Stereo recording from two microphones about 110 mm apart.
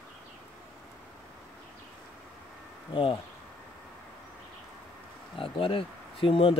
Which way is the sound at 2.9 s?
50° left (ahead or behind).